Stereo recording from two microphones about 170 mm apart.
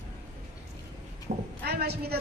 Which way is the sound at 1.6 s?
70° right (ahead or behind).